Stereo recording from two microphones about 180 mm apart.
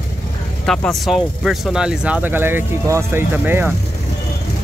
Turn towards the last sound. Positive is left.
turn(degrees=-10)  # may be behind; listen again after turning